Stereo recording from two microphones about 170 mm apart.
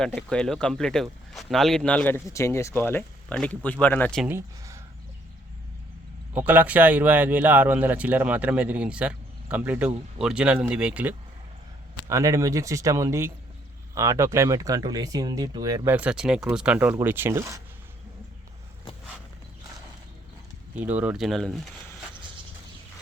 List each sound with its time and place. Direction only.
0.0 s speech: 5° left (ahead or behind)
4.3 s speech: 15° right (ahead or behind)
6.3 s speech: 10° right (ahead or behind)
11.9 s speech: 20° right (ahead or behind)
15.9 s speech: 5° right (ahead or behind)
20.7 s speech: 10° right (ahead or behind)